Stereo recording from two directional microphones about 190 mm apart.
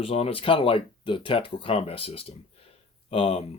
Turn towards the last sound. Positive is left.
turn(degrees=30)  # may be behind; listen again after turning